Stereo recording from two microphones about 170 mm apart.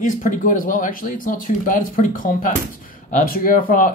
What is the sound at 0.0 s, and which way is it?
Speech, 50° left (ahead or behind).